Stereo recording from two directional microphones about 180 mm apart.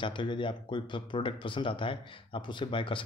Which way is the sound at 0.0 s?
25° left (ahead or behind).